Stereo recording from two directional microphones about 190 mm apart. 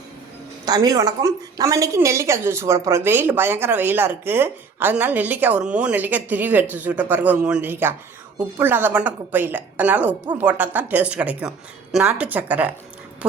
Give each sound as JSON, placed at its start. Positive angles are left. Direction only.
{"t": 0.6, "sound": "a woman's voice", "side_deg": -20}